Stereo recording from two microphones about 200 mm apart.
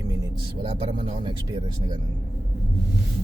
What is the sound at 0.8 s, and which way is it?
Speech, 25° right (ahead or behind).